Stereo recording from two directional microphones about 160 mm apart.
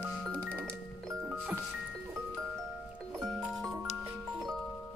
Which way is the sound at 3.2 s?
Centre (ahead or behind).